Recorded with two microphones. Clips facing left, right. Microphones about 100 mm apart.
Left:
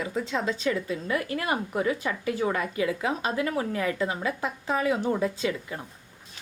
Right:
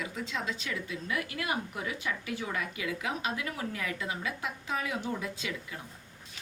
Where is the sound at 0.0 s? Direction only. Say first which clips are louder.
Left 7 dB; 35° left (ahead or behind).